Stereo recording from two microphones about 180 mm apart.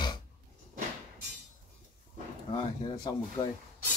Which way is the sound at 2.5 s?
25° left (ahead or behind).